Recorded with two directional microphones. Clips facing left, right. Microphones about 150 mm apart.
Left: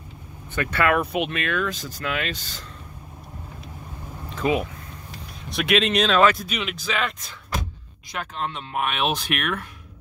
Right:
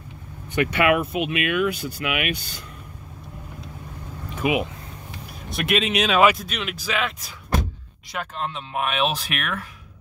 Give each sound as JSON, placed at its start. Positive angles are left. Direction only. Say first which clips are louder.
{"t": 0.6, "sound": "speech", "louder": "right 2 dB", "side_deg": -15}
{"t": 4.4, "sound": "speech", "louder": "even", "side_deg": -15}
{"t": 5.5, "sound": "speech", "louder": "left 2 dB", "side_deg": 0}